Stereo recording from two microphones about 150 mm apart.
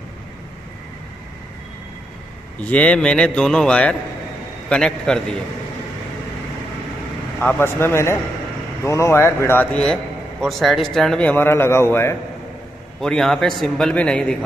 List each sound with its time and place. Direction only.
2.6 s a man's voice: 10° left (ahead or behind)
7.3 s a man's voice: 10° left (ahead or behind)
13.0 s a man's voice: 5° left (ahead or behind)